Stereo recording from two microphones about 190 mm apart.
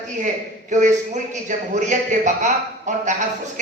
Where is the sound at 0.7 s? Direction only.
40° right (ahead or behind).